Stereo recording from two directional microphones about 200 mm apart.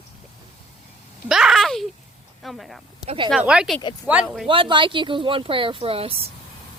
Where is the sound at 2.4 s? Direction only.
Centre (ahead or behind).